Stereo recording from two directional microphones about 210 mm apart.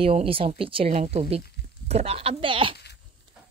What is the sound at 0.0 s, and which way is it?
Speech, 25° right (ahead or behind).